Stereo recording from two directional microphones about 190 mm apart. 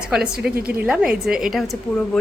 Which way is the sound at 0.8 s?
5° right (ahead or behind).